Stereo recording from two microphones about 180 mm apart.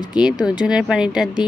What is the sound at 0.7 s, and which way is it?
Speech, 5° right (ahead or behind).